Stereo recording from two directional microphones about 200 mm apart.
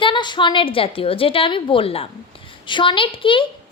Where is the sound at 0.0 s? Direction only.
25° left (ahead or behind).